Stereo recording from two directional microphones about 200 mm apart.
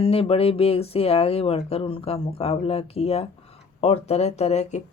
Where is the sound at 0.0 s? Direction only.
30° left (ahead or behind).